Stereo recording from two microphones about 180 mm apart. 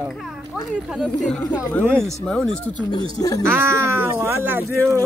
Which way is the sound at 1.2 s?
5° left (ahead or behind).